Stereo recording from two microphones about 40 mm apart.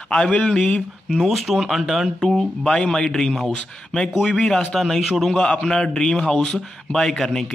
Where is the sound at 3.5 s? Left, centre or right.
Left; by 5.3 s centre.